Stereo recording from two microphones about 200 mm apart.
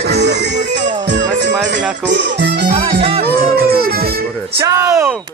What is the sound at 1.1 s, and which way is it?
Music, 60° right (ahead or behind).